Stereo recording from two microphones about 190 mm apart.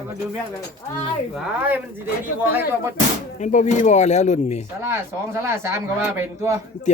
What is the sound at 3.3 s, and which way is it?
Speech, 40° left (ahead or behind).